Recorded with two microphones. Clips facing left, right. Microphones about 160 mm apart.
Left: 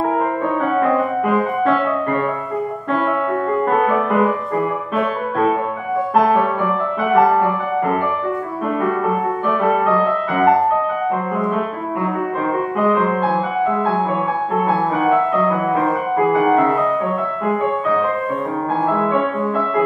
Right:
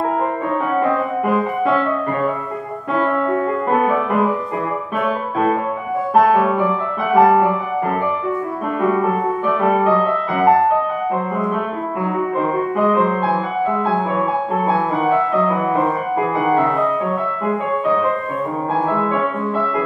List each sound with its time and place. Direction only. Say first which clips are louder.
0.7 s music: left 1 dB; centre (ahead or behind)
3.8 s music: left 1 dB; centre (ahead or behind)
7.2 s music: right 2 dB; 5° right (ahead or behind)
9.5 s music: right 1 dB; centre (ahead or behind)
12.7 s music: even; centre (ahead or behind)
14.6 s music: left 1 dB; centre (ahead or behind)